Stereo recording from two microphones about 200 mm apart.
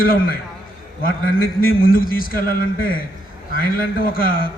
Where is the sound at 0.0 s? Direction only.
45° left (ahead or behind).